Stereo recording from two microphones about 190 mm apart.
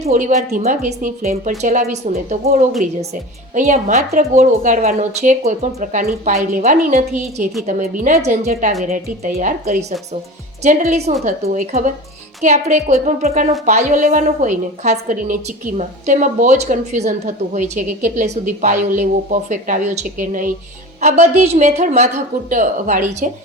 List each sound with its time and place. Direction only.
0.0 s a woman's voice: 40° right (ahead or behind)
8.8 s a woman's voice: 45° right (ahead or behind)